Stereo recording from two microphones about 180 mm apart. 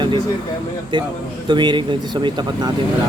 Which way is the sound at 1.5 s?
25° right (ahead or behind).